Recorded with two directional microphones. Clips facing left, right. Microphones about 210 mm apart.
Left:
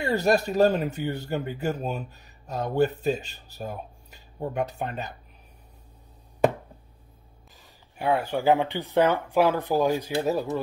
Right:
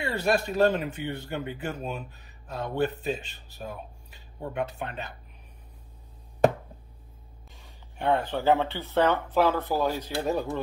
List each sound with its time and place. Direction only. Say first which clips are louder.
0.0 s speech: left 4 dB; 40° left (ahead or behind)
7.5 s speech: left 1 dB; 5° left (ahead or behind)